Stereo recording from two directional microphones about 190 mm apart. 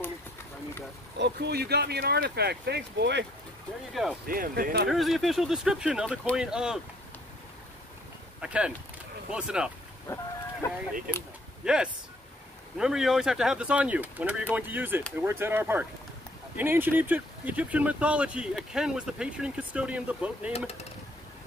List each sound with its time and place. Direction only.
1.1 s speech: 65° right (ahead or behind)
3.9 s speech: centre (ahead or behind)
4.3 s speech: 50° right (ahead or behind)
4.8 s speech: centre (ahead or behind)
8.4 s speech: 5° right (ahead or behind)
10.0 s chicken: 15° left (ahead or behind)
11.6 s speech: 5° right (ahead or behind)